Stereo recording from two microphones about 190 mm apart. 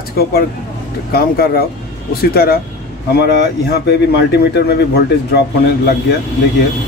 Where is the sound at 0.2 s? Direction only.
55° left (ahead or behind).